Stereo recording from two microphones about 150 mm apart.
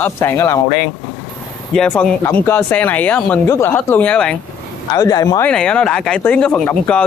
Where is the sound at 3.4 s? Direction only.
20° left (ahead or behind).